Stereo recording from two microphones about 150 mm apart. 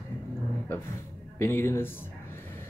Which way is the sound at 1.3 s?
15° left (ahead or behind).